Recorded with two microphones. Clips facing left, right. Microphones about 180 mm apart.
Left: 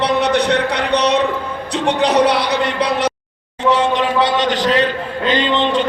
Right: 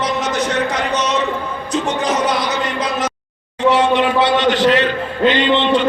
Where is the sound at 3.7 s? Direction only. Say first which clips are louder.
Right 1 dB; 40° left (ahead or behind).